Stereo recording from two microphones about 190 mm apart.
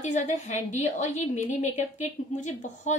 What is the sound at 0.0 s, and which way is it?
A woman's voice, 40° left (ahead or behind).